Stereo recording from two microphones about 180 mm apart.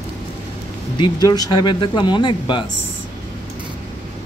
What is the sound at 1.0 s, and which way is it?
Speech, 20° left (ahead or behind).